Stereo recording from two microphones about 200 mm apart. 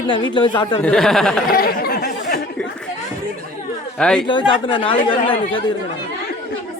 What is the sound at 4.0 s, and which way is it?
Speech, 5° left (ahead or behind).